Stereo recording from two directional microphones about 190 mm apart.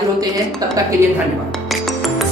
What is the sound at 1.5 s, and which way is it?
Music, centre (ahead or behind).